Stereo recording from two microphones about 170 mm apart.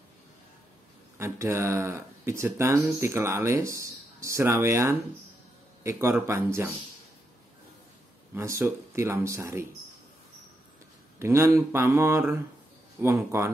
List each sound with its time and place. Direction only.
1.1 s speech: 15° right (ahead or behind)
8.4 s speech: 15° right (ahead or behind)
11.1 s speech: 15° right (ahead or behind)